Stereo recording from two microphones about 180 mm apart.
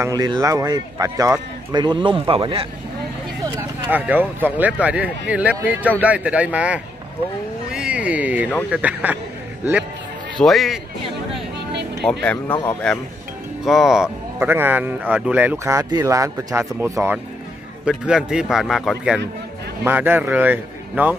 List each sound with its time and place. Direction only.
0.0 s speech: 20° right (ahead or behind)
3.9 s speech: 10° right (ahead or behind)
10.4 s speech: centre (ahead or behind)
12.1 s speech: 10° left (ahead or behind); by 21.2 s 10° right (ahead or behind)